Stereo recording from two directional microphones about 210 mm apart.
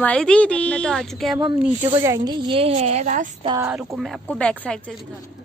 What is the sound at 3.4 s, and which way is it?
Speech, 15° right (ahead or behind).